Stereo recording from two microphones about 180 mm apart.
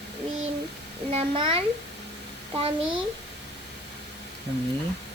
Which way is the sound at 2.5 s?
30° right (ahead or behind).